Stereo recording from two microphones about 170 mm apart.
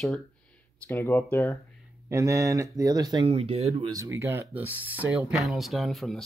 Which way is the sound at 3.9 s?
15° right (ahead or behind).